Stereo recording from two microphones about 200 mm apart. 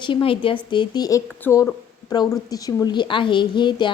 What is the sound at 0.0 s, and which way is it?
Speech, 25° left (ahead or behind).